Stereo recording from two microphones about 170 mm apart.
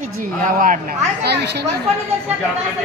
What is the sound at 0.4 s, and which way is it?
Speech, 50° right (ahead or behind).